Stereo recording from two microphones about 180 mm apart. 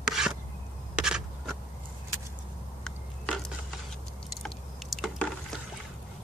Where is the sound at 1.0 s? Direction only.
5° right (ahead or behind).